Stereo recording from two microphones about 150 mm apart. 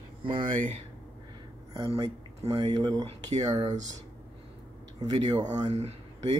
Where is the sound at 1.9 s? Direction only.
40° right (ahead or behind).